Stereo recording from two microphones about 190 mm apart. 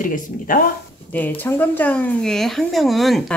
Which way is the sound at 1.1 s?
10° left (ahead or behind).